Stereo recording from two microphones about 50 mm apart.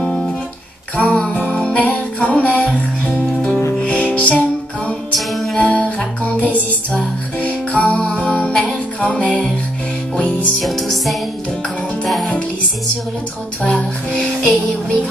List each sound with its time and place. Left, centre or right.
0.0 s music: centre
3.8 s music: left
5.1 s music: centre
5.6 s music: left
10.6 s music: centre
13.7 s music: left